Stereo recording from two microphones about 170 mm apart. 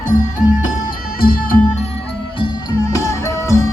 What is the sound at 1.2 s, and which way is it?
Music, 60° left (ahead or behind).